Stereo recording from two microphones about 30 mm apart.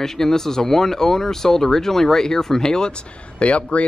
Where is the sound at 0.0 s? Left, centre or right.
Centre.